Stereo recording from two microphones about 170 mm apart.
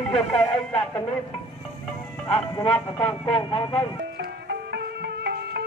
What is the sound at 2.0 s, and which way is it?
Speech, 25° left (ahead or behind).